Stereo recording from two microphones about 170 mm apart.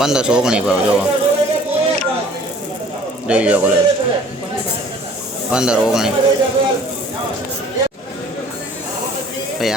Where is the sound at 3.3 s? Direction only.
10° right (ahead or behind).